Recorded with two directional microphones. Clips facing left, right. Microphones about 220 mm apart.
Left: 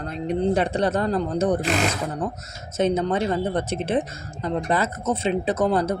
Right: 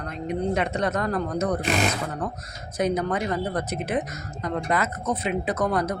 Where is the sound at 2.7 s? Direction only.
25° left (ahead or behind).